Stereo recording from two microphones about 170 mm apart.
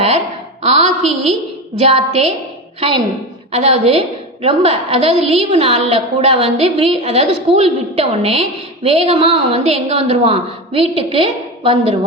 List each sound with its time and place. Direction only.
0.6 s a sound: 40° right (ahead or behind)
1.8 s a woman's voice: 40° right (ahead or behind)
3.5 s a woman's voice: 40° right (ahead or behind)